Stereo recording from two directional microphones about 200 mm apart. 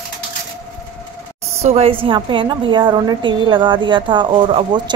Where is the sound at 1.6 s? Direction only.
30° right (ahead or behind).